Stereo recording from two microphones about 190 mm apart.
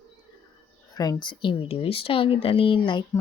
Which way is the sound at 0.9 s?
20° left (ahead or behind).